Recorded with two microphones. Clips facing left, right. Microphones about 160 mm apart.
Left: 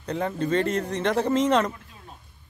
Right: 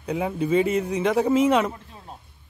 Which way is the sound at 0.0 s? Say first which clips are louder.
Right 2 dB; 10° right (ahead or behind).